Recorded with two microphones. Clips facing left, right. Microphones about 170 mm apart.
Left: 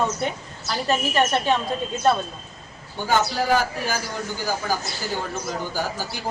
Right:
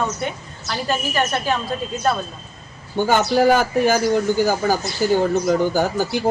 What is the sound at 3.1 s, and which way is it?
A man's voice, 55° right (ahead or behind).